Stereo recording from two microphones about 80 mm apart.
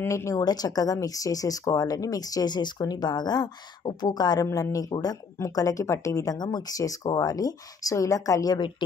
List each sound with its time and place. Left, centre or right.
0.0 s a woman's voice: left
0.4 s speech: left
6.3 s speech: left
6.8 s speech: left
8.5 s speech: left